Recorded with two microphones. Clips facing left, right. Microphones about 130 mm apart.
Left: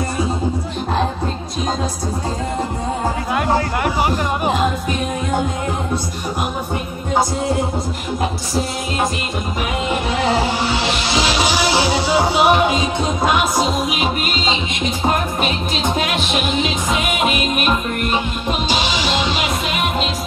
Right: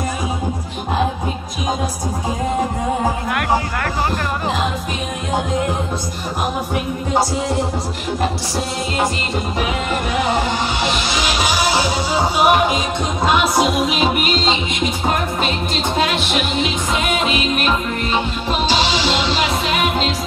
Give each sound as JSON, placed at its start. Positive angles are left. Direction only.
{"t": 11.1, "sound": "music", "side_deg": 25}
{"t": 17.1, "sound": "music", "side_deg": 10}
{"t": 18.7, "sound": "music", "side_deg": -30}